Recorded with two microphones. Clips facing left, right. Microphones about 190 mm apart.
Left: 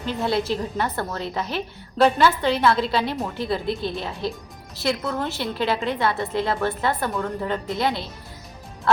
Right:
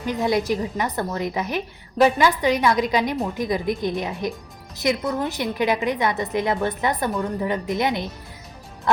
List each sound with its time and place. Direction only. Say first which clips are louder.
0.0 s a woman's voice: right 2 dB; 15° right (ahead or behind)